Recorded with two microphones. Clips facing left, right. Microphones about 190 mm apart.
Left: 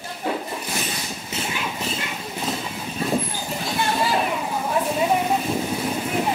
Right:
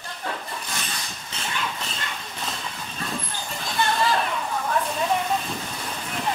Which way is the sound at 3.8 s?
10° left (ahead or behind).